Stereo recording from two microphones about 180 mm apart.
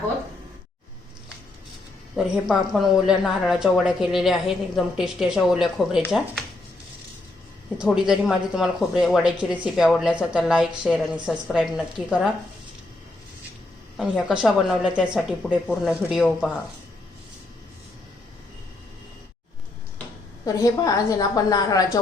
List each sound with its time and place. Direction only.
2.1 s a woman's voice: 5° right (ahead or behind)
7.8 s a woman's voice: 5° right (ahead or behind)
13.9 s a woman's voice: 5° right (ahead or behind)
20.4 s a woman's voice: 20° left (ahead or behind)